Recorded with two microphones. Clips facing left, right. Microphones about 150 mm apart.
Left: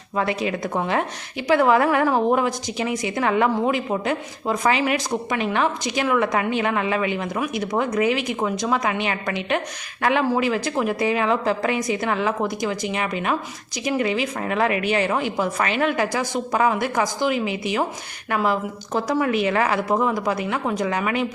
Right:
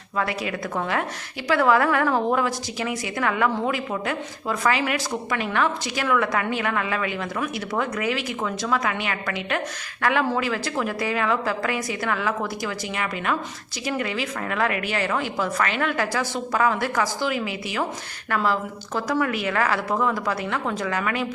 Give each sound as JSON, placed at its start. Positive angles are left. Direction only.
{"t": 0.2, "sound": "a woman's voice", "side_deg": 25}